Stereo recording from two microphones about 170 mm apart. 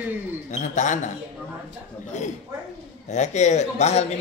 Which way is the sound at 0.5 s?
45° left (ahead or behind).